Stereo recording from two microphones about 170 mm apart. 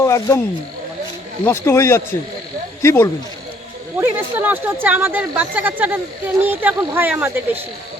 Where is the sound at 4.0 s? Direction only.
10° right (ahead or behind).